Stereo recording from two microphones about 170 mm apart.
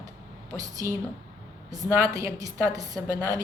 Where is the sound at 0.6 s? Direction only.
20° right (ahead or behind).